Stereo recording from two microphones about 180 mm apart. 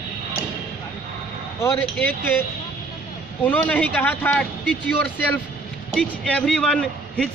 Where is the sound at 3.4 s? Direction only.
10° left (ahead or behind).